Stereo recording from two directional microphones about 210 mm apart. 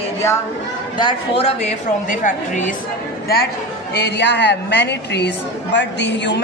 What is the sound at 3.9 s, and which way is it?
A woman's voice, 55° left (ahead or behind).